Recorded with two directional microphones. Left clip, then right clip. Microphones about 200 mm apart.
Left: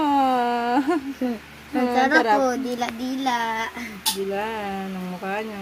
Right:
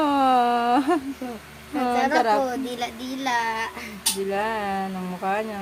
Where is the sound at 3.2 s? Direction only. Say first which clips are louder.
Even; 30° left (ahead or behind).